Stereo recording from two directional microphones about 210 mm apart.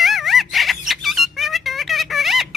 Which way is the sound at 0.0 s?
Centre (ahead or behind).